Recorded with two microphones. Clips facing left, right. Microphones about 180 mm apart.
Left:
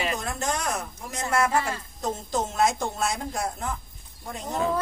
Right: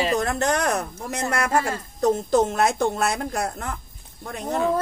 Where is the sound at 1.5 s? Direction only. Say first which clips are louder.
Right 3 dB; 45° right (ahead or behind).